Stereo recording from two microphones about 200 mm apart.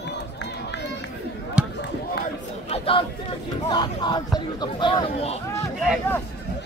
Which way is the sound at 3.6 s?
20° left (ahead or behind).